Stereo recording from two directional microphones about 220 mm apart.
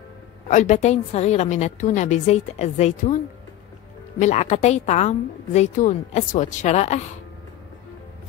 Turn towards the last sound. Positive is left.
turn(degrees=30)  # may be behind; listen again after turning